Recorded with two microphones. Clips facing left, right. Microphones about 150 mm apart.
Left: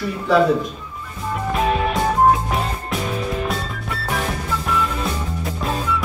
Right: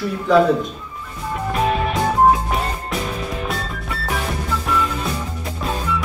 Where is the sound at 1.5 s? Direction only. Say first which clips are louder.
Even; centre (ahead or behind).